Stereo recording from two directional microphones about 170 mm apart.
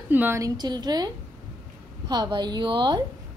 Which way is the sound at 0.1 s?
10° right (ahead or behind).